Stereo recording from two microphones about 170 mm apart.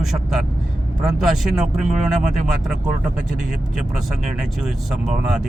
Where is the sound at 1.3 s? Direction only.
5° right (ahead or behind).